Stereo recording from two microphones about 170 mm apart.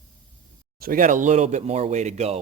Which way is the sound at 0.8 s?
55° right (ahead or behind).